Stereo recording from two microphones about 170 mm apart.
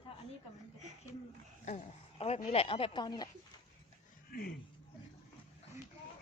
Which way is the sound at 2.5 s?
35° left (ahead or behind).